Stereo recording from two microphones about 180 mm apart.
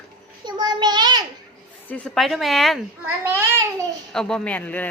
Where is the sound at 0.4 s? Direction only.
25° right (ahead or behind).